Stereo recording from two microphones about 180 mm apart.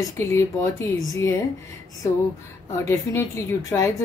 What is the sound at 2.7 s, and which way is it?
A woman's voice, 15° left (ahead or behind).